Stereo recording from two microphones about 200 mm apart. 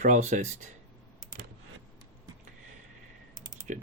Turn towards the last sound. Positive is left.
turn(degrees=-40)  # may be behind; listen again after turning